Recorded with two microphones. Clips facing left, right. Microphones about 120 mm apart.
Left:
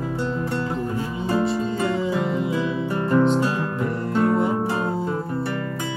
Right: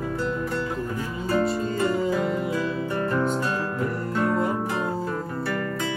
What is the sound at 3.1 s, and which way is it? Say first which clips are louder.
Music: left 9 dB; 25° left (ahead or behind).